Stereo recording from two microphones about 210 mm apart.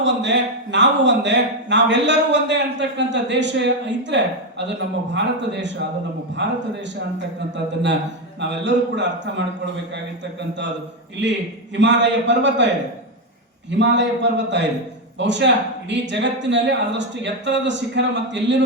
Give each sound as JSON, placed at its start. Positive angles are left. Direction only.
{"t": 0.0, "sound": "speech", "side_deg": -60}
{"t": 11.8, "sound": "speech", "side_deg": -55}
{"t": 13.7, "sound": "speech", "side_deg": -55}